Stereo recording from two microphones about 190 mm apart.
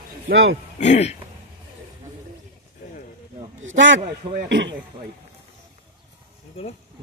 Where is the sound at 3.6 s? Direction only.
80° right.